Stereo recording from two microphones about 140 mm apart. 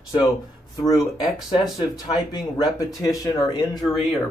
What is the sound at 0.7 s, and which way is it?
Speech, 25° left (ahead or behind).